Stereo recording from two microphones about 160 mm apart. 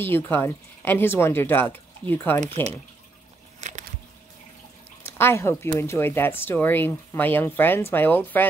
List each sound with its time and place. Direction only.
0.0 s speech: 15° left (ahead or behind)
3.6 s a sound: 45° right (ahead or behind)
5.1 s speech: 15° left (ahead or behind)